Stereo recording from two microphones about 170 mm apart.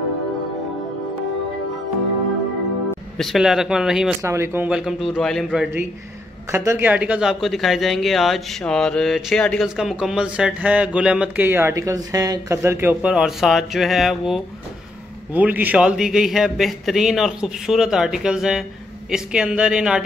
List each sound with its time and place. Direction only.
3.2 s speech: centre (ahead or behind)
4.2 s speech: 15° right (ahead or behind)
6.5 s speech: 15° right (ahead or behind)